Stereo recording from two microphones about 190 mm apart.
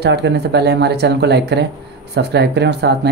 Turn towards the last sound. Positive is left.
turn(degrees=-60)  # may be behind; listen again after turning